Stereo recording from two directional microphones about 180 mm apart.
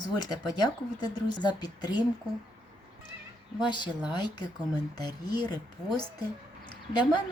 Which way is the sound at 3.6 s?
25° left (ahead or behind).